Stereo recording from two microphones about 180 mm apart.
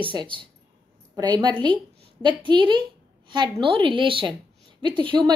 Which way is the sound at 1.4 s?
25° right (ahead or behind).